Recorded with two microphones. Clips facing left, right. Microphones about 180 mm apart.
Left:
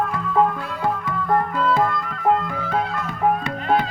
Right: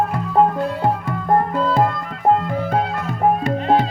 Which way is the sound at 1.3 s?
30° right (ahead or behind).